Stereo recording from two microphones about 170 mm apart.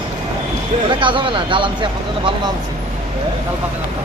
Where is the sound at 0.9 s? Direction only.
30° right (ahead or behind).